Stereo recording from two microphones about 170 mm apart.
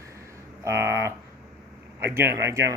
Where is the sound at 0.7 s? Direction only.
15° right (ahead or behind).